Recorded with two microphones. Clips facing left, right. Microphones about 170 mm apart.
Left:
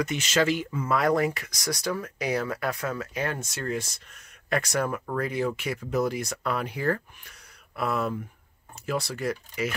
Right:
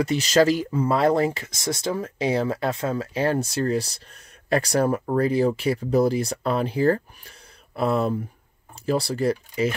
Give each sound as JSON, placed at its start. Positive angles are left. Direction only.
{"t": 0.0, "sound": "speech", "side_deg": -35}